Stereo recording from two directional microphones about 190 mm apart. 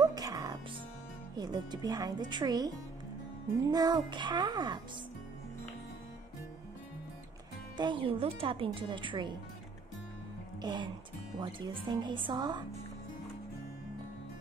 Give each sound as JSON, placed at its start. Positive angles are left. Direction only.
{"t": 0.0, "sound": "music", "side_deg": -20}
{"t": 1.3, "sound": "speech", "side_deg": -20}
{"t": 3.7, "sound": "speech", "side_deg": -20}
{"t": 7.7, "sound": "speech", "side_deg": -25}
{"t": 10.6, "sound": "speech", "side_deg": -25}